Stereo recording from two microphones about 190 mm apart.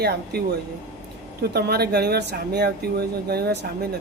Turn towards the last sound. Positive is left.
turn(degrees=-55)  # may be behind; listen again after turning